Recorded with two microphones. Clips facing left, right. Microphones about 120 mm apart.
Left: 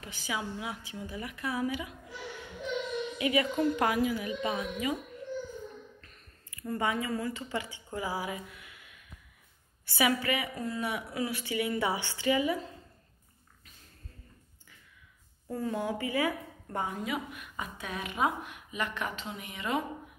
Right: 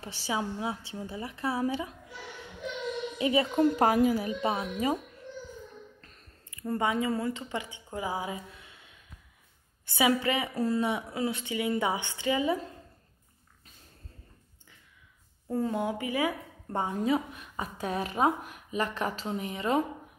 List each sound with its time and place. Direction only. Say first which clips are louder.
0.0 s a woman's voice: right 4 dB; 35° right (ahead or behind)
3.2 s a woman's voice: right 3 dB; 30° right (ahead or behind)
5.9 s squish: even; 35° right (ahead or behind)
6.5 s a woman's voice: right 2 dB; 25° right (ahead or behind)
15.5 s speech: right 3 dB; 25° right (ahead or behind)
16.8 s a woman's voice: right 7 dB; 30° right (ahead or behind)